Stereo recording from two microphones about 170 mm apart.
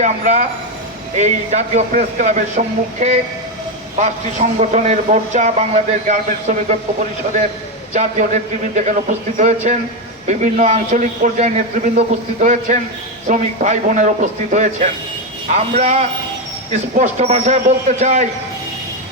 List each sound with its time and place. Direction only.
0.0 s a man's voice: 45° right (ahead or behind)
7.9 s a man's voice: 45° right (ahead or behind)